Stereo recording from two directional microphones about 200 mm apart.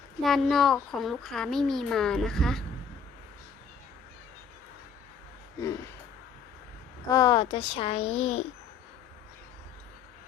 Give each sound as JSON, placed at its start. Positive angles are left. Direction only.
{"t": 0.2, "sound": "a child's voice", "side_deg": 0}
{"t": 7.1, "sound": "a child's voice", "side_deg": 20}